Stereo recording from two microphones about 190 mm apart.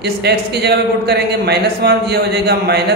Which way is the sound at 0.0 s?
60° right (ahead or behind).